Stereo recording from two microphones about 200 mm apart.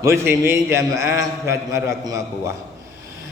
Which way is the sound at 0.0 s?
15° right (ahead or behind).